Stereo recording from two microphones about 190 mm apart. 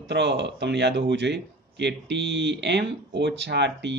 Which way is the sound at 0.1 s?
65° right (ahead or behind).